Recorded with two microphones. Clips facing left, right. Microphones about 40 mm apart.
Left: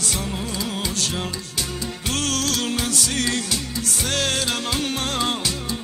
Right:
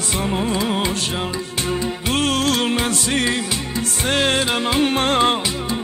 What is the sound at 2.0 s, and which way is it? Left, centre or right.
Music, right.